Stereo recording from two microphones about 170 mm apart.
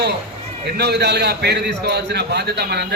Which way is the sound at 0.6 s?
75° right (ahead or behind).